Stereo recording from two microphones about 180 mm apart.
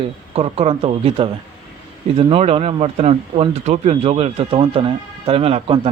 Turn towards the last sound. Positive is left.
turn(degrees=-30)  # may be behind; listen again after turning